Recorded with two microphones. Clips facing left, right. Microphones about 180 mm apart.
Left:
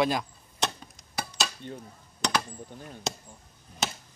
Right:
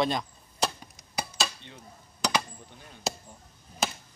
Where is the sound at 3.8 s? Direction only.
Centre (ahead or behind).